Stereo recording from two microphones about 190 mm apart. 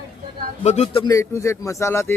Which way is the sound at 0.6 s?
35° left (ahead or behind).